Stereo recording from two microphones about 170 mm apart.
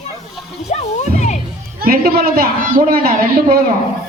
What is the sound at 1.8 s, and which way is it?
A woman's voice, 60° right (ahead or behind).